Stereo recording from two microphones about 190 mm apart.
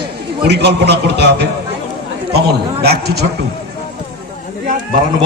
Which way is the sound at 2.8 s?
60° right (ahead or behind).